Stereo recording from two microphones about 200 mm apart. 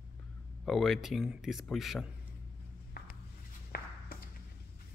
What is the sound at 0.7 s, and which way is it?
Speech, centre (ahead or behind).